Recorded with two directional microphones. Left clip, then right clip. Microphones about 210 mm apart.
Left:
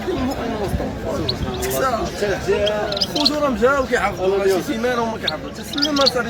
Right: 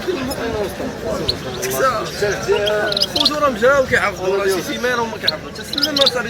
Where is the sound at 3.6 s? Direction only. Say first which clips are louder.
Right 3 dB; 50° left (ahead or behind).